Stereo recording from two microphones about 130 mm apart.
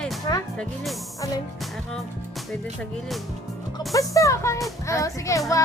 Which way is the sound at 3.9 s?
25° left (ahead or behind).